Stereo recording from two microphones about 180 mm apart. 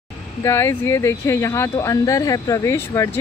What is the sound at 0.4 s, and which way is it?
Speech, 15° left (ahead or behind).